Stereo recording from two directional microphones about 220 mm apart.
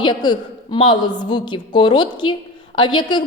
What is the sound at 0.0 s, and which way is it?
A man's voice, 20° left (ahead or behind).